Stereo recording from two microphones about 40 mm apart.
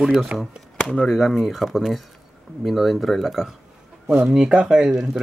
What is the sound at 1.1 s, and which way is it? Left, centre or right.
Speech, centre.